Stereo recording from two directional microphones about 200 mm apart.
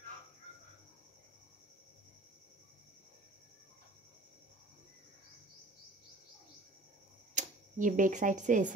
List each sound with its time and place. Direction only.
7.3 s speech: 40° right (ahead or behind)